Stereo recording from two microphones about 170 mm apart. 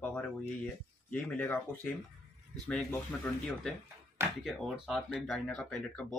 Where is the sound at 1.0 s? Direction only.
10° left (ahead or behind).